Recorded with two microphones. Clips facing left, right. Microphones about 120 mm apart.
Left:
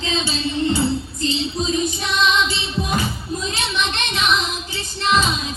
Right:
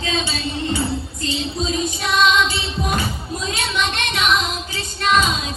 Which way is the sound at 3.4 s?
25° left (ahead or behind).